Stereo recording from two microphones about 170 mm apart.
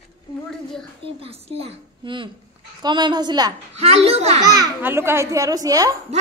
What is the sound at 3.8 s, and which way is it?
Speech, 35° right (ahead or behind).